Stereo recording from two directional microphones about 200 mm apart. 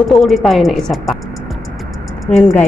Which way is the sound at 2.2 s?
Centre (ahead or behind).